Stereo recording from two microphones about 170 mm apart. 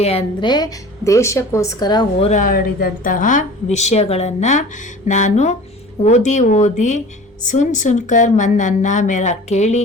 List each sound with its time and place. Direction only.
0.0 s a woman's voice: 35° left (ahead or behind)
2.4 s a woman's voice: 55° left (ahead or behind)